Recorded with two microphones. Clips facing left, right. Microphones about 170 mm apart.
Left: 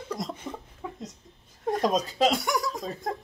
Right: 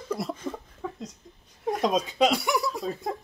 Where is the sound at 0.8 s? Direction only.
10° left (ahead or behind).